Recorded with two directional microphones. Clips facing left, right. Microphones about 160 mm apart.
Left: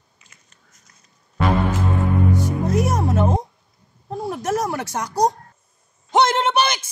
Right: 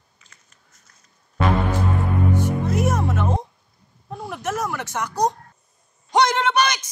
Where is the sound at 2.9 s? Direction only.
35° left (ahead or behind).